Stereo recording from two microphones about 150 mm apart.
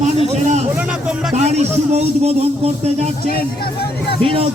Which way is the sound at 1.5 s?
45° right (ahead or behind).